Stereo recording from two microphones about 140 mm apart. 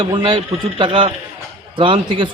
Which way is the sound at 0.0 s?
35° right (ahead or behind).